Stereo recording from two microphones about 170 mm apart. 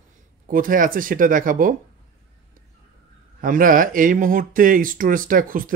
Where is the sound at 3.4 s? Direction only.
55° right (ahead or behind).